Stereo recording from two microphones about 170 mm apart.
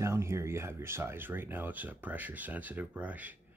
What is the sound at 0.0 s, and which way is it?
Speech, 15° right (ahead or behind).